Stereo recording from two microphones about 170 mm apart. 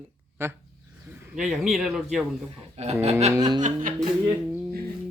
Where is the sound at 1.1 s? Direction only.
5° right (ahead or behind).